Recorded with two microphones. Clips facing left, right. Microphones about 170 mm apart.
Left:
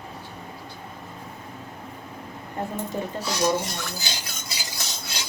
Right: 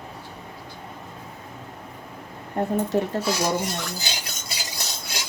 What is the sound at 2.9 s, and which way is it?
Speech, 75° right (ahead or behind).